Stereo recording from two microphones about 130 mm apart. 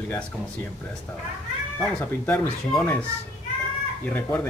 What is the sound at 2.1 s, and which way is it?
Speech, 15° left (ahead or behind).